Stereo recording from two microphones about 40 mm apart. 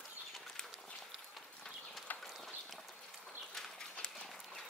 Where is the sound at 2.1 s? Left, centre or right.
Left.